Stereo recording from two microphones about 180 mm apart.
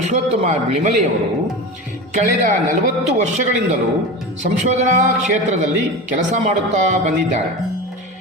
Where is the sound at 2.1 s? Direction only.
45° right (ahead or behind).